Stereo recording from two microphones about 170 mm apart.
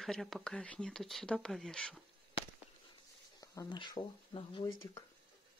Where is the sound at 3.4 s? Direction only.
20° left (ahead or behind).